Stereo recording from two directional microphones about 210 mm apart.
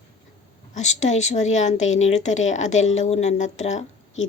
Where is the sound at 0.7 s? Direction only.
35° left (ahead or behind).